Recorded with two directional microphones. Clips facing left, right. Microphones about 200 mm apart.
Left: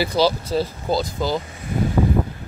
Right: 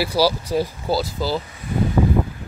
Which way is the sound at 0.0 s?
10° right (ahead or behind).